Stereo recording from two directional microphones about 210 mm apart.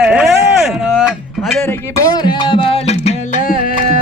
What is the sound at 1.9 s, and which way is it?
Music, 15° left (ahead or behind).